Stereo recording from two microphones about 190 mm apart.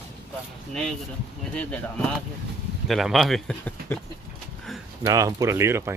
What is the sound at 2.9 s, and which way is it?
Speech, centre (ahead or behind).